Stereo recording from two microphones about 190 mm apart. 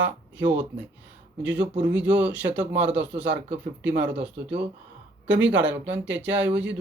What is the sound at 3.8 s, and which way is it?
Speech, 70° right (ahead or behind).